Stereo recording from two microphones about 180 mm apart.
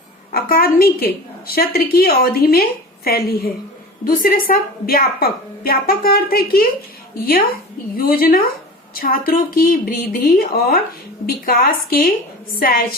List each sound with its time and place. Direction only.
0.3 s a woman's voice: 55° left (ahead or behind)